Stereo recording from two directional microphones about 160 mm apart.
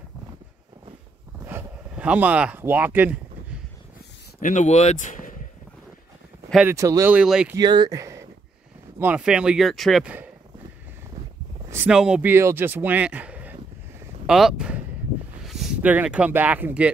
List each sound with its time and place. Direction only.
1.4 s a sound: 10° right (ahead or behind)
4.4 s speech: 50° left (ahead or behind)
6.7 s speech: 20° right (ahead or behind)
7.5 s speech: 25° right (ahead or behind)
9.0 s speech: 5° right (ahead or behind)
11.7 s speech: 10° right (ahead or behind)